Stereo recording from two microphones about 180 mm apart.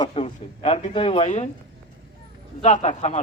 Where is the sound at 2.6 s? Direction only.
40° left (ahead or behind).